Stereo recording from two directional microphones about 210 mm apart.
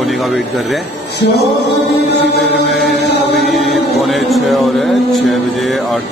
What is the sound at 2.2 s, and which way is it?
Chant, 50° left (ahead or behind).